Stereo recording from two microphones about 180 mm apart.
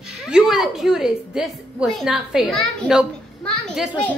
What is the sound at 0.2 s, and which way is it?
A woman's voice, centre (ahead or behind).